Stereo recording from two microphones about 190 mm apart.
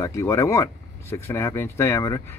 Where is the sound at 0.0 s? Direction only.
15° left (ahead or behind).